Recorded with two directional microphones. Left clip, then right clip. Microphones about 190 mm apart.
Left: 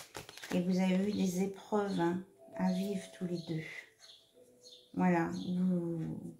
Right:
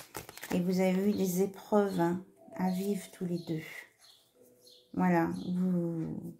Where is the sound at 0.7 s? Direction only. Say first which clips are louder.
Right 7 dB; 50° right (ahead or behind).